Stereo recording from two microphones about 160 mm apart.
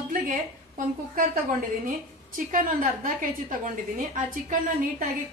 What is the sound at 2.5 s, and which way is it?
A woman's voice, 55° right (ahead or behind).